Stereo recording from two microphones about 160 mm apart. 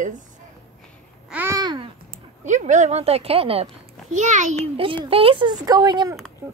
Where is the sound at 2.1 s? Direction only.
50° right (ahead or behind).